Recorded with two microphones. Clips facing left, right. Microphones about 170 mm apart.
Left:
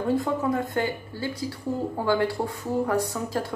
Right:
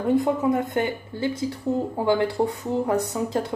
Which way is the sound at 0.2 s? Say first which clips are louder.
Right 4 dB; 20° right (ahead or behind).